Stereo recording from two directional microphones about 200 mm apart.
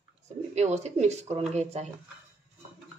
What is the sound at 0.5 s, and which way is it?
A woman's voice, 35° right (ahead or behind).